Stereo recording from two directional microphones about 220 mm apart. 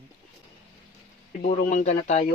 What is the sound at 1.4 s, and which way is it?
Speech, 35° left (ahead or behind).